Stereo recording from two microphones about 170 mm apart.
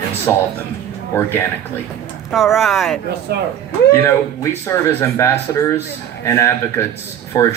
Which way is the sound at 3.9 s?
15° left (ahead or behind).